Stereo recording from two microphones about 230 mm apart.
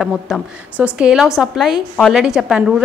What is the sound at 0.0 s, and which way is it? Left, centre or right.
A woman's voice, centre.